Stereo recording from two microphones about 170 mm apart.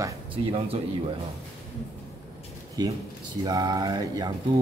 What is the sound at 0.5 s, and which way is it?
Speech, 35° right (ahead or behind).